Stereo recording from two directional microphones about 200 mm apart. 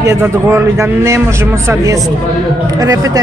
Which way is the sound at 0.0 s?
10° right (ahead or behind).